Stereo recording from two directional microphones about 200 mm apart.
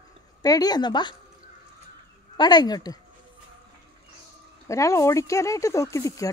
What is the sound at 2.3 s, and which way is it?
Speech, 20° left (ahead or behind).